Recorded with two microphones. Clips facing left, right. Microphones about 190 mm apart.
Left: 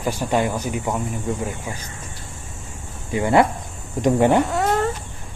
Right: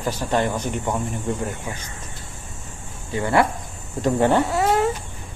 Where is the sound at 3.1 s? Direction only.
20° left (ahead or behind).